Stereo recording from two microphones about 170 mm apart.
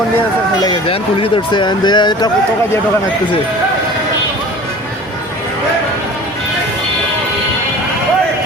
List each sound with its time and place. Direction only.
0.6 s speech: 30° left (ahead or behind)